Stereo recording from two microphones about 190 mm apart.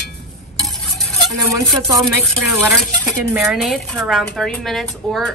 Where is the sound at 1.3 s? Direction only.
15° right (ahead or behind).